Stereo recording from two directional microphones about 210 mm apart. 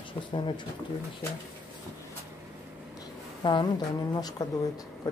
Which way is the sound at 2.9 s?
20° left (ahead or behind).